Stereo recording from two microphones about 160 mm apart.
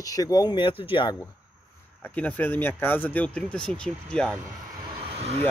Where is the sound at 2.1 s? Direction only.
10° left (ahead or behind).